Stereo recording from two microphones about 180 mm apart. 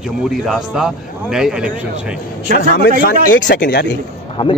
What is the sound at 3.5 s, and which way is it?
Speech, 70° left (ahead or behind).